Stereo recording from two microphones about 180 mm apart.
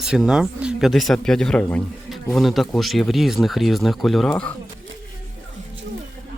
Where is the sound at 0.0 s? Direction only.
5° right (ahead or behind).